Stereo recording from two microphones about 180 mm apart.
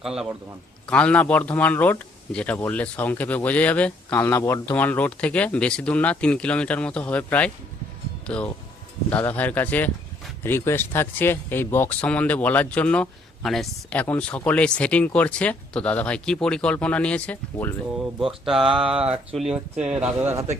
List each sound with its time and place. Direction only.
0.0 s speech: 5° right (ahead or behind)
18.2 s speech: centre (ahead or behind)
18.6 s speech: 30° right (ahead or behind)
19.4 s speech: 5° right (ahead or behind)